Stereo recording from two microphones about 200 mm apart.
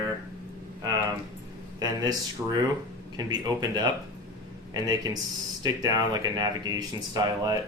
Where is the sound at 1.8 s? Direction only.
20° right (ahead or behind).